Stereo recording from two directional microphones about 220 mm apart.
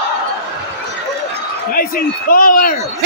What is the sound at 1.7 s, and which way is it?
A man's voice, 40° left (ahead or behind).